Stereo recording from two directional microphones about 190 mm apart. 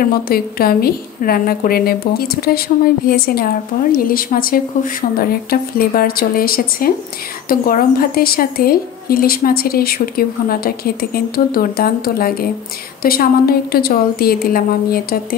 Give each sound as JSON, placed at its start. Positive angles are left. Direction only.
{"t": 0.0, "sound": "a woman's voice", "side_deg": 50}